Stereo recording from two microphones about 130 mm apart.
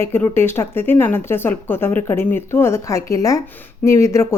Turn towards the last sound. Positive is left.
turn(degrees=20)  # may be behind; listen again after turning